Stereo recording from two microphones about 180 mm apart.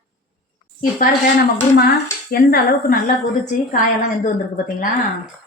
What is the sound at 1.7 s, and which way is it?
Speech, 55° left (ahead or behind).